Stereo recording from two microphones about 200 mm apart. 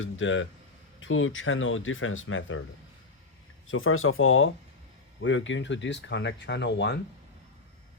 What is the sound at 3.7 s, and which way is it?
Speech, 90° left.